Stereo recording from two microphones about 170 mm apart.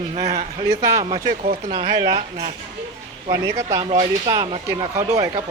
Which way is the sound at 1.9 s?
25° right (ahead or behind).